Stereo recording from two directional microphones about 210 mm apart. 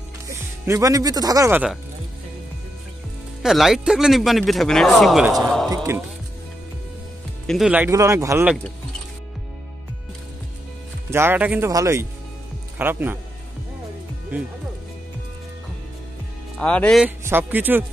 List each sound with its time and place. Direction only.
0.7 s speech: 15° right (ahead or behind)
3.4 s speech: centre (ahead or behind)
5.7 s music: 15° right (ahead or behind)
7.4 s speech: centre (ahead or behind)
11.1 s speech: 10° right (ahead or behind)
14.3 s speech: 10° right (ahead or behind)
16.5 s speech: 5° left (ahead or behind)
17.0 s speech: 10° right (ahead or behind)